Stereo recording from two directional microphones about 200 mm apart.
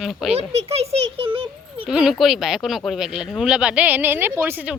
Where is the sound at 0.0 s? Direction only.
Centre (ahead or behind).